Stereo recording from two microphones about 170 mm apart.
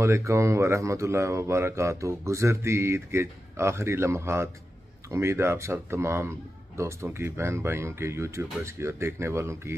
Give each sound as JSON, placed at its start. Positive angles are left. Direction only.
{"t": 0.0, "sound": "speech", "side_deg": -15}